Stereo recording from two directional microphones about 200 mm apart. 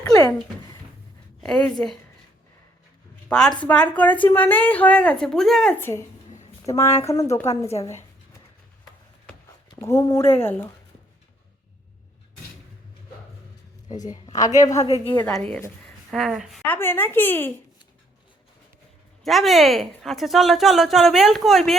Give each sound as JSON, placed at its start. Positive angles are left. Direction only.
{"t": 0.1, "sound": "a sound", "side_deg": 15}
{"t": 1.4, "sound": "a woman's voice", "side_deg": 5}
{"t": 3.2, "sound": "a woman's voice", "side_deg": 5}
{"t": 9.7, "sound": "a woman's voice", "side_deg": 15}
{"t": 13.9, "sound": "speech", "side_deg": 40}
{"t": 14.3, "sound": "a woman's voice", "side_deg": 15}
{"t": 19.2, "sound": "speech", "side_deg": 0}